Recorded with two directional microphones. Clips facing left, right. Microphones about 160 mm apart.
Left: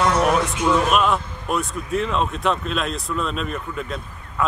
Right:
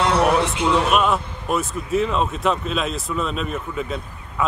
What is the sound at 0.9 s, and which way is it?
Speech, centre (ahead or behind).